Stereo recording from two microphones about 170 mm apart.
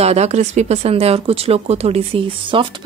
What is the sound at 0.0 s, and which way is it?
Speech, 40° right (ahead or behind).